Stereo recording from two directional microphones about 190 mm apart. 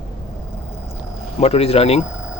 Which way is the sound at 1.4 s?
30° left (ahead or behind).